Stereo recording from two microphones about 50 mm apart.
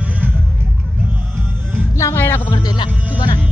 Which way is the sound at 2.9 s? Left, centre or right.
Right.